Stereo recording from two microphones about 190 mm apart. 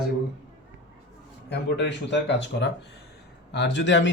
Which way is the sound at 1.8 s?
70° left (ahead or behind).